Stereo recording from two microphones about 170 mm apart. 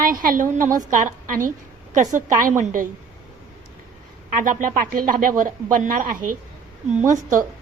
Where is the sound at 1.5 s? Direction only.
45° right (ahead or behind).